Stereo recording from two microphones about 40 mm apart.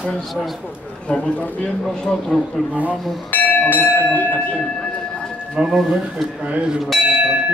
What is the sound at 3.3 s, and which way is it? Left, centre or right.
Bell, left.